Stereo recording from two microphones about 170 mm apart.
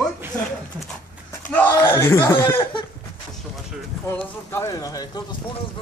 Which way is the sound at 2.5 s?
30° left (ahead or behind).